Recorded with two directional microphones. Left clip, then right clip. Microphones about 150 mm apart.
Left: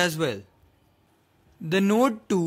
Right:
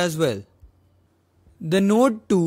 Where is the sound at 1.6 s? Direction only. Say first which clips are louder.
Right 3 dB; 35° right (ahead or behind).